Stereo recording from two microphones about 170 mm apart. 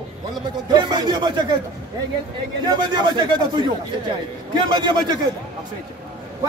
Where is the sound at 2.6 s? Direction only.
25° right (ahead or behind).